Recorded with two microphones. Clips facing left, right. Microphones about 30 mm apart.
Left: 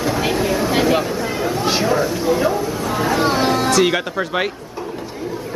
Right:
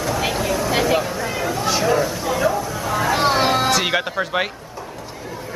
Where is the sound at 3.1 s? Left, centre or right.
Centre.